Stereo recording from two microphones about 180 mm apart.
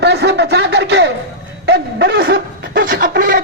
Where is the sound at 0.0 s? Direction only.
70° right (ahead or behind).